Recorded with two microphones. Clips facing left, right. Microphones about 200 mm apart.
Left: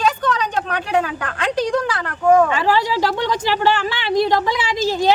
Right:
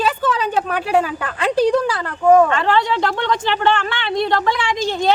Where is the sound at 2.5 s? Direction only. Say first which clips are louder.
Right 1 dB; 5° left (ahead or behind).